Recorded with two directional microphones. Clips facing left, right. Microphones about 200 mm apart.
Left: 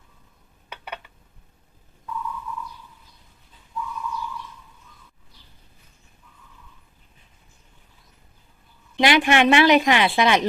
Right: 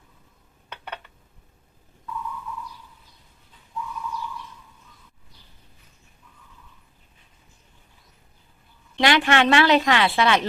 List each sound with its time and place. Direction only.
9.0 s speech: 15° left (ahead or behind)